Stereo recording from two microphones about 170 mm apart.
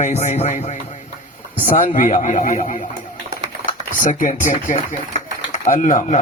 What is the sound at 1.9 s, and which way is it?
Speech, 50° left (ahead or behind).